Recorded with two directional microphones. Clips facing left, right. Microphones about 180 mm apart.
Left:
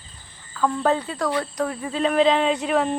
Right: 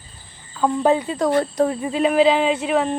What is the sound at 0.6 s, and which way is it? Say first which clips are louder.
Speech: right 4 dB; 20° right (ahead or behind).